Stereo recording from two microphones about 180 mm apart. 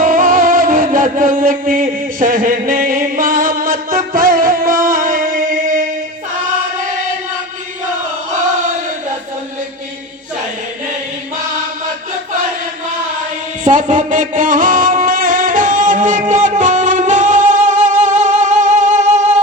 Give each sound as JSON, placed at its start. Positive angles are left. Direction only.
{"t": 0.0, "sound": "music", "side_deg": -50}
{"t": 13.7, "sound": "a sound", "side_deg": -45}
{"t": 16.3, "sound": "music", "side_deg": -45}